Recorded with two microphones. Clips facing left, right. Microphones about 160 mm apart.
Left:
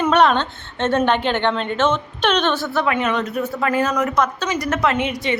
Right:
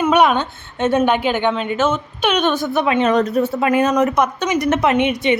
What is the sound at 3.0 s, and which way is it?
Speech, 40° right (ahead or behind).